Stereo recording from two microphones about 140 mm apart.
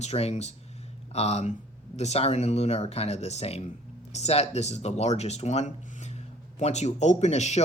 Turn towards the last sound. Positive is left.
turn(degrees=50)  # may be behind; listen again after turning